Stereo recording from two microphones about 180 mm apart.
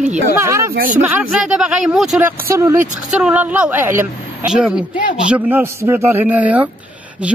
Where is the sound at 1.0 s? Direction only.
5° right (ahead or behind).